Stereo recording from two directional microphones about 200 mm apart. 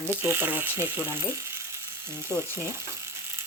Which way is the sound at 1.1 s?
15° right (ahead or behind).